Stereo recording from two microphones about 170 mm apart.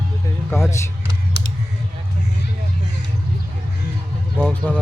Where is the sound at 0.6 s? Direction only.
15° left (ahead or behind).